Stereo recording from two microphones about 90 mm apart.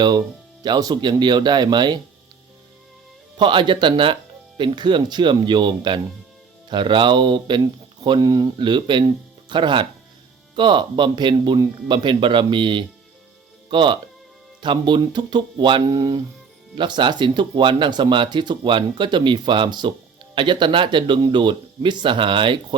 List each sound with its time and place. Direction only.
0.6 s speech: 50° right (ahead or behind)
3.3 s speech: 65° right (ahead or behind)
8.2 s speech: 45° right (ahead or behind)
8.5 s speech: 60° right (ahead or behind)
15.9 s speech: 45° right (ahead or behind)
16.7 s speech: 60° right (ahead or behind)